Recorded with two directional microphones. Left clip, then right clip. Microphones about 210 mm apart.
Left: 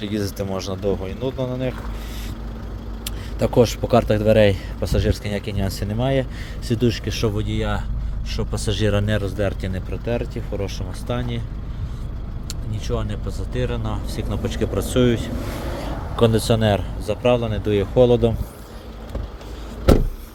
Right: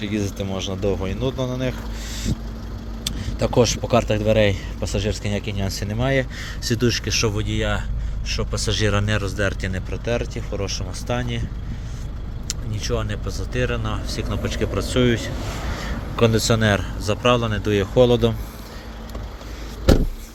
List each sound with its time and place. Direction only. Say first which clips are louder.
0.0 s speech: even; 25° left (ahead or behind)
1.0 s speech: right 1 dB; 5° left (ahead or behind)
3.0 s speech: even; 20° left (ahead or behind)
12.5 s speech: right 2 dB; centre (ahead or behind)